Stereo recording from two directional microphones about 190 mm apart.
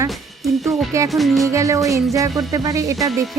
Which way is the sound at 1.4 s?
15° right (ahead or behind).